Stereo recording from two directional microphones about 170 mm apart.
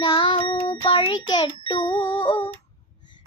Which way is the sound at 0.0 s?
25° left (ahead or behind).